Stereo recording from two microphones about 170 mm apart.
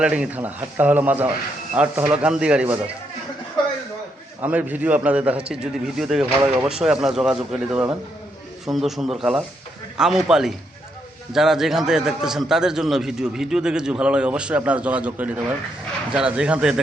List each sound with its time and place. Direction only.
0.0 s a man's voice: 5° right (ahead or behind)
4.4 s a man's voice: 10° right (ahead or behind)